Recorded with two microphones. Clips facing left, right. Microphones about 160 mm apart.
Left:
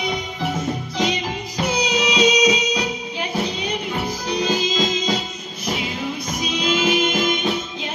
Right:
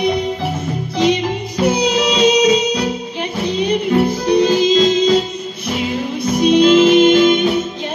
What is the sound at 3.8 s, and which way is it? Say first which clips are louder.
Music: right 11 dB; 55° right (ahead or behind).